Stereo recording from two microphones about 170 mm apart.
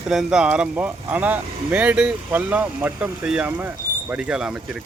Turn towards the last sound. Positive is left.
turn(degrees=-5)  # may be behind; listen again after turning